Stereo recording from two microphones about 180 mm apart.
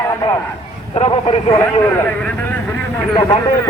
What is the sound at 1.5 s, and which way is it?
A man's voice, 10° left (ahead or behind).